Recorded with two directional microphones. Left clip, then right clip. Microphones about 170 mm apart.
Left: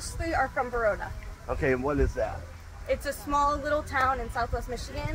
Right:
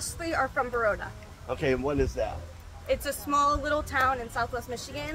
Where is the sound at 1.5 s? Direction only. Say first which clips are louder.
Left 1 dB; 20° left (ahead or behind).